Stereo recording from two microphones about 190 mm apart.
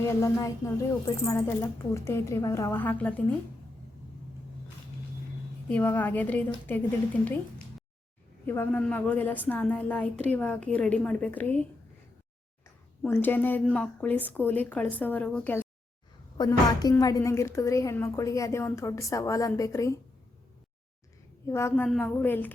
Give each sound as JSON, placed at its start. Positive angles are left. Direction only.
{"t": 0.0, "sound": "a woman's voice", "side_deg": 15}
{"t": 5.6, "sound": "a woman's voice", "side_deg": 10}
{"t": 8.4, "sound": "a woman's voice", "side_deg": 10}
{"t": 13.0, "sound": "a woman's voice", "side_deg": 10}
{"t": 21.4, "sound": "a woman's voice", "side_deg": 15}